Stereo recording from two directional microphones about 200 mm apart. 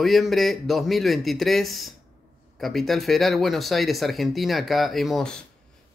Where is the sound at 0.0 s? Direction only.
Centre (ahead or behind).